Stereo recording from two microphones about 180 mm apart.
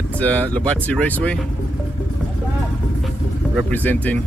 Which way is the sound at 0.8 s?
5° left (ahead or behind).